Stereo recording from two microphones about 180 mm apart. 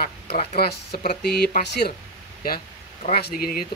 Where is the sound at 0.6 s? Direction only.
60° left (ahead or behind).